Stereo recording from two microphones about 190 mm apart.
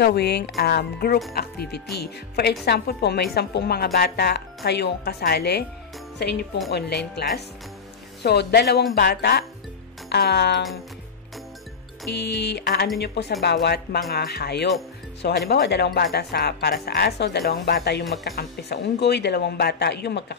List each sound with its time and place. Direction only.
0.0 s speech: 60° left (ahead or behind)
12.2 s speech: 60° left (ahead or behind)